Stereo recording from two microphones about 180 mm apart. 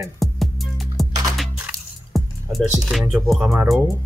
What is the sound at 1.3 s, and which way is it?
Crushing, centre (ahead or behind).